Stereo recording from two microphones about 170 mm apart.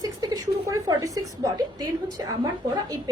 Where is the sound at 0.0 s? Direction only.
20° right (ahead or behind).